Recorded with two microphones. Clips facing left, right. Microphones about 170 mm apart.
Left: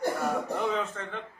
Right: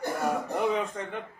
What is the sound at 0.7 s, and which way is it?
Speech, 15° right (ahead or behind).